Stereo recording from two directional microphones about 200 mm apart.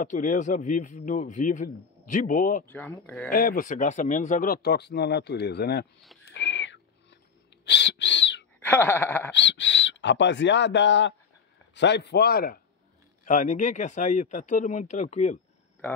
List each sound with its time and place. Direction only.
0.0 s speech: 40° left (ahead or behind)
2.6 s speech: 10° left (ahead or behind)
3.3 s speech: 45° left (ahead or behind)
6.2 s owl: 65° left (ahead or behind)
7.6 s bird: 60° left (ahead or behind)
8.5 s speech: 10° left (ahead or behind)
9.3 s speech: 60° left (ahead or behind)
13.2 s speech: 40° left (ahead or behind)